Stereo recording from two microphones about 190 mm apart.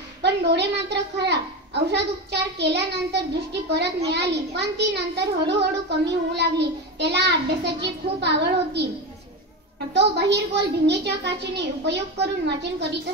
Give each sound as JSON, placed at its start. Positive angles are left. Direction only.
{"t": 0.2, "sound": "a child's voice", "side_deg": -60}
{"t": 9.9, "sound": "a child's voice", "side_deg": -60}